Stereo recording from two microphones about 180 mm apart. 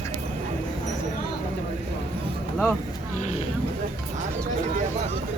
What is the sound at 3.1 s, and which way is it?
Vehicle, 40° left (ahead or behind).